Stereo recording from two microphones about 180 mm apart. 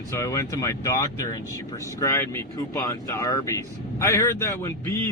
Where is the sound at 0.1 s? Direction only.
15° left (ahead or behind).